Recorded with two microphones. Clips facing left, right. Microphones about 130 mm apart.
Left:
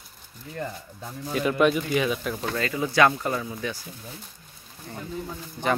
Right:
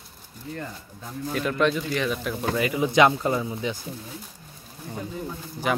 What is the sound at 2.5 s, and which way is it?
Speech, 15° right (ahead or behind).